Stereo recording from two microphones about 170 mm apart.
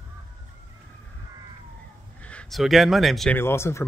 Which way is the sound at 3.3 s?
15° left (ahead or behind).